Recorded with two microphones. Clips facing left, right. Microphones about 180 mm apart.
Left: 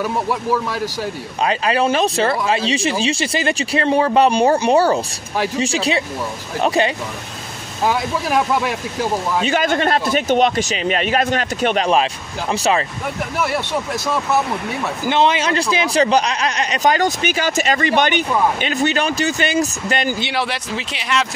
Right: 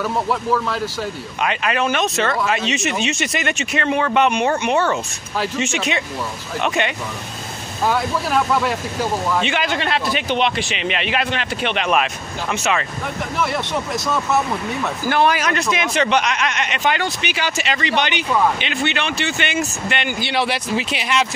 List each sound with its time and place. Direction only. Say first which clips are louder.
0.0 s speech: left 1 dB; 10° left (ahead or behind)
1.4 s speech: left 3 dB; 30° left (ahead or behind)
7.8 s speech: left 1 dB; 15° left (ahead or behind)
9.4 s speech: left 4 dB; 40° left (ahead or behind)
15.0 s speech: left 1 dB; 20° left (ahead or behind); by 20.2 s 35° left (ahead or behind)
20.3 s speech: right 2 dB; 5° right (ahead or behind)